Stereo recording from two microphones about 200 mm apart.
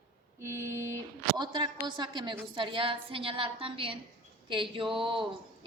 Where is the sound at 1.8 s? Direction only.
20° right (ahead or behind).